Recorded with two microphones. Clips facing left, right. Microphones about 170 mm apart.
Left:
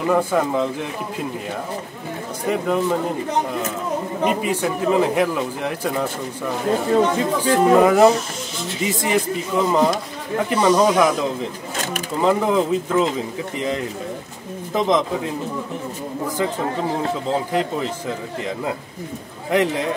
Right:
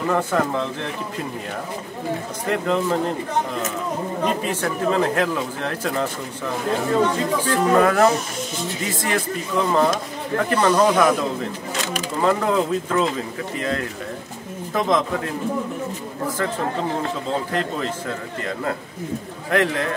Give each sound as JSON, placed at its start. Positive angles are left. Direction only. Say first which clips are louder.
{"t": 0.0, "sound": "speech", "louder": "left 2 dB", "side_deg": 10}
{"t": 2.4, "sound": "speech", "louder": "left 2 dB", "side_deg": 10}
{"t": 4.2, "sound": "speech", "louder": "left 3 dB", "side_deg": 15}
{"t": 12.2, "sound": "speech", "louder": "left 2 dB", "side_deg": 15}
{"t": 19.5, "sound": "speech", "louder": "left 1 dB", "side_deg": 15}